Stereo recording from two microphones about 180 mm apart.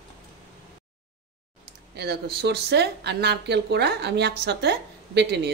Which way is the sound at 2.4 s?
70° right (ahead or behind).